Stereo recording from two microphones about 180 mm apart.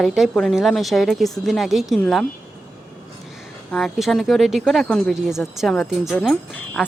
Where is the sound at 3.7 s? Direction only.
5° left (ahead or behind).